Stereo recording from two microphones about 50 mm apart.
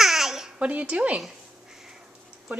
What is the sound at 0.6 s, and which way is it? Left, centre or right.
Speech, right.